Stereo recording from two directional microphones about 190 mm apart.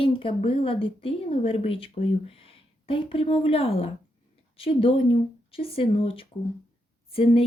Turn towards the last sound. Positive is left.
turn(degrees=30)  # may be behind; listen again after turning